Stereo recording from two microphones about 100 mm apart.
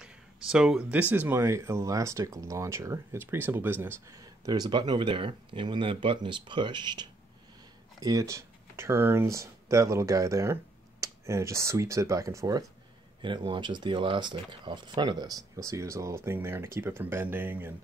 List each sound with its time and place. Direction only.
0.0 s a sound: 5° right (ahead or behind)
1.1 s speech: 20° right (ahead or behind)
4.1 s speech: 40° right (ahead or behind)
8.0 s speech: 35° right (ahead or behind)
13.2 s speech: 50° right (ahead or behind); by 17.7 s 20° right (ahead or behind)